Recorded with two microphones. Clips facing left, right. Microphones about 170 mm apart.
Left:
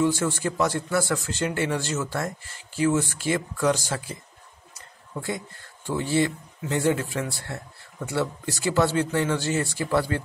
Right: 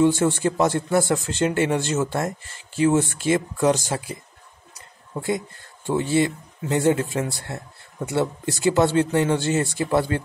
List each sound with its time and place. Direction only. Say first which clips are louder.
0.0 s speech: right 5 dB; 25° right (ahead or behind)